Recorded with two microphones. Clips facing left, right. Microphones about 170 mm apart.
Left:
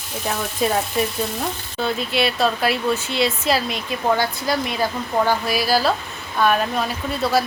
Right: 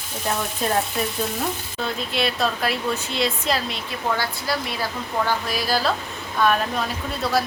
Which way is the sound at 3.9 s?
15° left (ahead or behind).